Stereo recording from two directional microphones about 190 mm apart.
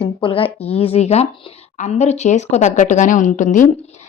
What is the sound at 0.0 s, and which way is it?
A woman's voice, 30° left (ahead or behind).